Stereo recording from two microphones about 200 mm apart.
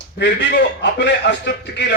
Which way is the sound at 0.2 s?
60° left (ahead or behind).